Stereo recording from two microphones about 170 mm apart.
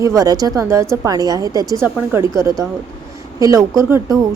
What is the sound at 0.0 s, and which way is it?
A woman's voice, 20° right (ahead or behind).